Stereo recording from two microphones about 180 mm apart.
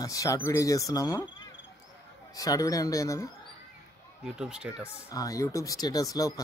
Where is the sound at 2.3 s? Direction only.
20° left (ahead or behind).